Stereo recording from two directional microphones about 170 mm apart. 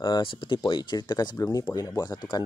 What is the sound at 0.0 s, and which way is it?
Speech, 25° left (ahead or behind).